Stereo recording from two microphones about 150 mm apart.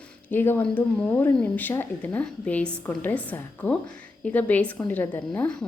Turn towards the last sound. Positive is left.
turn(degrees=10)  # may be behind; listen again after turning